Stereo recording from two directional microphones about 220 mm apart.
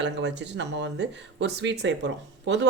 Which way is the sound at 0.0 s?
55° right (ahead or behind).